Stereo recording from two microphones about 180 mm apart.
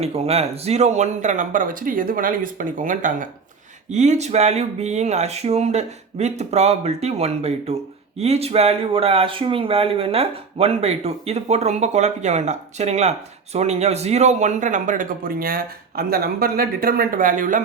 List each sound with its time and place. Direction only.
0.0 s speech: 35° right (ahead or behind)